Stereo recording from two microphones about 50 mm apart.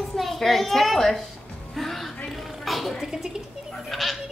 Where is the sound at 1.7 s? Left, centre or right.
Centre.